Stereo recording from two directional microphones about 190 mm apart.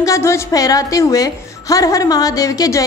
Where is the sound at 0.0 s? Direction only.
15° left (ahead or behind).